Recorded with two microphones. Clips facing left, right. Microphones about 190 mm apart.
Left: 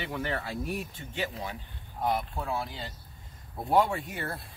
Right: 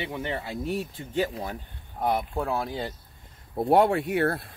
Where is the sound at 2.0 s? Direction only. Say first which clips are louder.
Right 4 dB; 50° right (ahead or behind).